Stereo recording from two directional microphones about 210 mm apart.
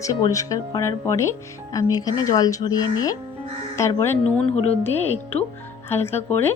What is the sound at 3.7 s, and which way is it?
Speech, 15° left (ahead or behind).